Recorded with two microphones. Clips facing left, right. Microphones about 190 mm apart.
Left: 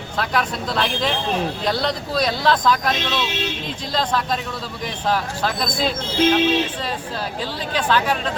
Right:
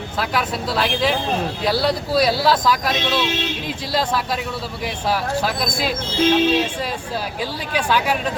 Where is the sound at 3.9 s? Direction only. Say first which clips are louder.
Even; 5° right (ahead or behind).